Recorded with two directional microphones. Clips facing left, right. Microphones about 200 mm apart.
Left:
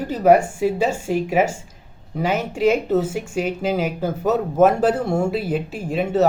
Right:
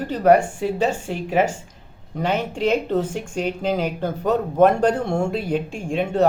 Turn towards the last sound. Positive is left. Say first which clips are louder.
# left 1 dB
turn(degrees=5)  # may be behind; listen again after turning